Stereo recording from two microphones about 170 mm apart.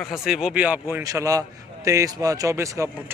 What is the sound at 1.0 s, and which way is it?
A man's voice, 20° right (ahead or behind).